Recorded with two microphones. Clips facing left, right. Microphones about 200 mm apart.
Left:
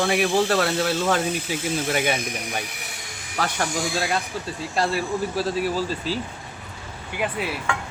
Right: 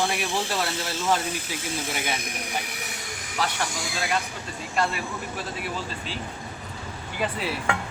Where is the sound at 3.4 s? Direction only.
50° left (ahead or behind).